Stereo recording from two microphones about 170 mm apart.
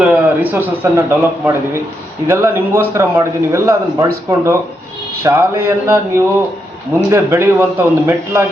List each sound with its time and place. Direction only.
0.0 s a man's voice: 10° right (ahead or behind)